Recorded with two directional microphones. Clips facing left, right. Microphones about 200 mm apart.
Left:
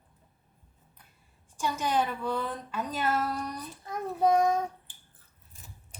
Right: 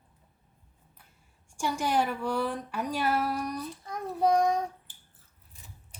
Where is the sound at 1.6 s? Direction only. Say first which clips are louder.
Right 1 dB; 15° right (ahead or behind).